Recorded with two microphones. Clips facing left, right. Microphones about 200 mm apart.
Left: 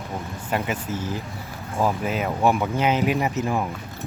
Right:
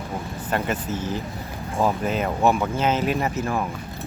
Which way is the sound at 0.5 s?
10° left (ahead or behind).